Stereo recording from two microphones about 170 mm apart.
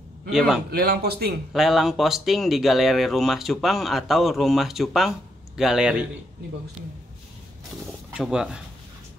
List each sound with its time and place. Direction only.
0.3 s speech: 5° right (ahead or behind)
0.7 s speech: 65° right (ahead or behind)
1.5 s speech: centre (ahead or behind)
8.1 s speech: 5° right (ahead or behind)